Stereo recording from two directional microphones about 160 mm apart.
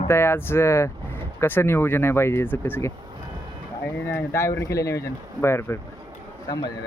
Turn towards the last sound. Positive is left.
turn(degrees=25)  # may be behind; listen again after turning